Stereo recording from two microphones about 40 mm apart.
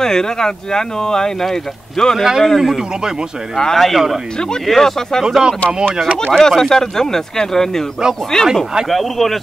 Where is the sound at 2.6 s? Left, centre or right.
Centre.